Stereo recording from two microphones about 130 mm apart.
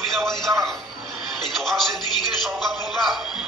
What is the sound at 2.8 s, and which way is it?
Music, centre (ahead or behind).